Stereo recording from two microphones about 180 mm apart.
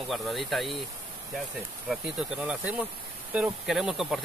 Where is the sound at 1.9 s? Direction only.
5° right (ahead or behind).